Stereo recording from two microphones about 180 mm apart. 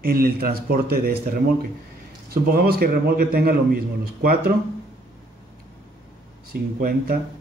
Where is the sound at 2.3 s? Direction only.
55° right (ahead or behind).